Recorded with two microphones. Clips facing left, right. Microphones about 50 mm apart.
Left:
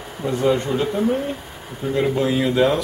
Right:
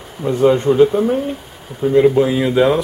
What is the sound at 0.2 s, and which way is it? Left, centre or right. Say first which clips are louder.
Speech: right 6 dB; right.